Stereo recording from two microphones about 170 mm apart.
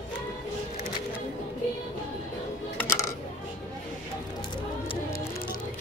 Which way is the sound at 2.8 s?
15° left (ahead or behind).